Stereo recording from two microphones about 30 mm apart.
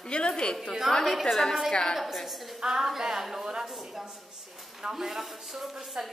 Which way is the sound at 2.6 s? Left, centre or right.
Centre.